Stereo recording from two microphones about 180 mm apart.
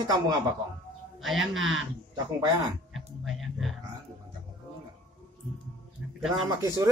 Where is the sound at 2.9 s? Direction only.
Centre (ahead or behind).